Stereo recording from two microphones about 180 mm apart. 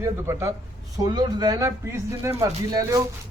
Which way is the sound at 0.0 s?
15° right (ahead or behind).